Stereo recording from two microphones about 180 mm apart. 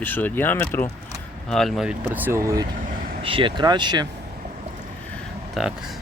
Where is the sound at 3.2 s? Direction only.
30° right (ahead or behind).